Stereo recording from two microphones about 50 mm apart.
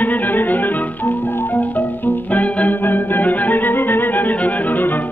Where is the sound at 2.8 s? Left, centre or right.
Left.